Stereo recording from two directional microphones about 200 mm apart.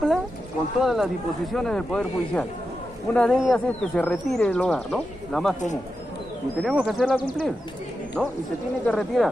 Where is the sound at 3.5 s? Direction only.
5° left (ahead or behind).